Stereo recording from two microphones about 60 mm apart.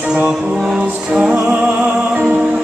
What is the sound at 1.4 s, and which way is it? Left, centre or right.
Music, right.